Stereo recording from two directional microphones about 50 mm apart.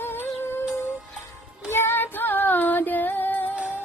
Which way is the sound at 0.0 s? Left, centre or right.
Left.